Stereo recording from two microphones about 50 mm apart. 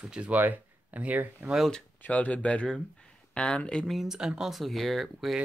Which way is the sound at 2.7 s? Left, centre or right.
Centre.